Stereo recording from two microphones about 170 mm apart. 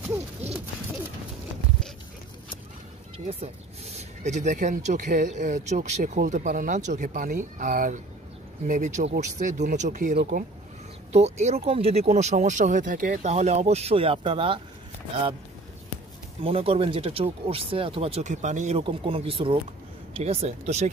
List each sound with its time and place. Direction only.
3.3 s speech: 40° right (ahead or behind)
16.4 s speech: 35° right (ahead or behind)